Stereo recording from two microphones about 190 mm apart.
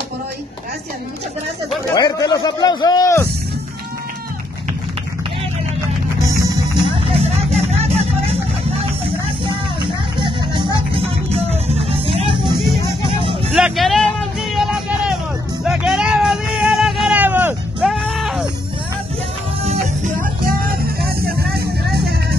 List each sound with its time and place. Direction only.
2.0 s a man's voice: 20° left (ahead or behind)
6.3 s music: 20° right (ahead or behind)
13.5 s music: centre (ahead or behind)
19.6 s music: 35° right (ahead or behind)
20.4 s music: 50° right (ahead or behind)